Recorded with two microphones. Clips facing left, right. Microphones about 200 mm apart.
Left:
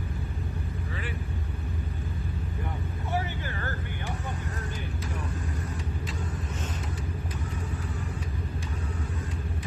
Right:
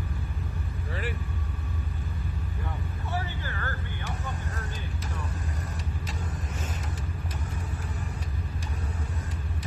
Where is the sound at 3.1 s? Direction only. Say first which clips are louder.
Left 3 dB; 20° left (ahead or behind).